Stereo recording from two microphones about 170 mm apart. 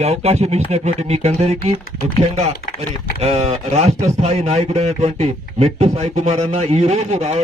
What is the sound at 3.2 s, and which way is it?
A man's voice, 40° right (ahead or behind).